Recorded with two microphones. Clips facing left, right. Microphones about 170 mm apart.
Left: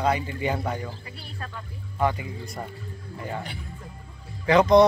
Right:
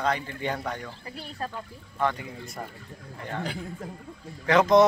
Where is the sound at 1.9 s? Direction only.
10° left (ahead or behind).